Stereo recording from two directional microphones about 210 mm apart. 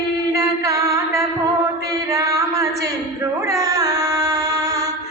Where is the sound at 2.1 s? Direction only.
15° right (ahead or behind).